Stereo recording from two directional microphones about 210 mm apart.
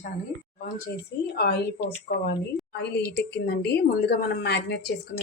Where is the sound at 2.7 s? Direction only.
55° left (ahead or behind).